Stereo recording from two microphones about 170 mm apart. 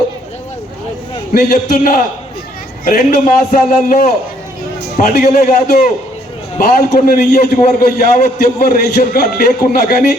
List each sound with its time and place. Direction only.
1.3 s a man's voice: 65° left (ahead or behind)
7.1 s a man's voice: 60° left (ahead or behind)